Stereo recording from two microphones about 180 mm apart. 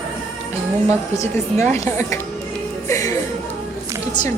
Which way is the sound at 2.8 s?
15° left (ahead or behind).